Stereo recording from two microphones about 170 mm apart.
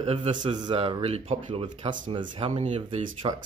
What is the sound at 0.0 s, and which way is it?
Speech, 35° right (ahead or behind).